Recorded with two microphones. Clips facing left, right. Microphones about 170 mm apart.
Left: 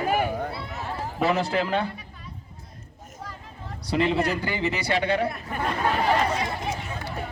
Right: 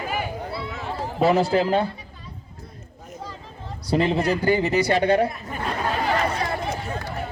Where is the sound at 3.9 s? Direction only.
40° right (ahead or behind).